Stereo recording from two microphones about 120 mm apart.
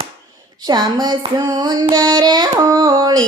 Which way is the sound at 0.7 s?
35° right (ahead or behind).